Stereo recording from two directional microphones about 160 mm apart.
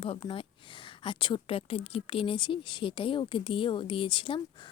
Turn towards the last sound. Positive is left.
turn(degrees=30)  # may be behind; listen again after turning